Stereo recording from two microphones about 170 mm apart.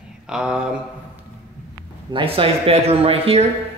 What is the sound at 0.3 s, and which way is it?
Speech, 5° right (ahead or behind).